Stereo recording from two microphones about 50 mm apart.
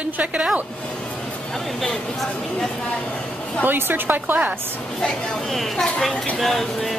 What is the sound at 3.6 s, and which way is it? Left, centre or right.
Speech, right.